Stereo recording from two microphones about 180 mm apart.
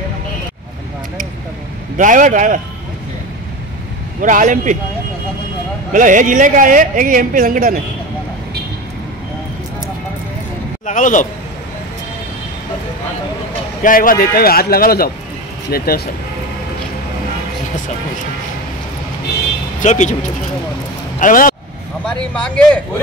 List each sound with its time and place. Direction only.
2.0 s speech: 45° right (ahead or behind)
4.2 s speech: 45° right (ahead or behind)
5.9 s speech: 45° right (ahead or behind)
10.9 s a man's voice: 45° left (ahead or behind)
13.8 s a man's voice: 50° left (ahead or behind)
19.8 s speech: 40° left (ahead or behind)
21.2 s speech: 50° left (ahead or behind)
22.0 s speech: 5° left (ahead or behind)